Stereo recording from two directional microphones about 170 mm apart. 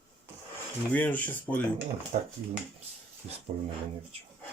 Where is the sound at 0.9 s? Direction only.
10° left (ahead or behind).